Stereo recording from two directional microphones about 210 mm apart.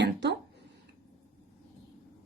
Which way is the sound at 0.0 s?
55° right (ahead or behind).